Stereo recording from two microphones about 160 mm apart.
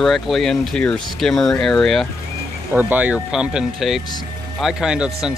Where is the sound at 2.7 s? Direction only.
10° right (ahead or behind).